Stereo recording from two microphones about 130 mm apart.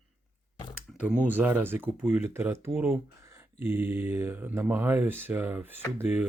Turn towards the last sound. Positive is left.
turn(degrees=-15)  # may be behind; listen again after turning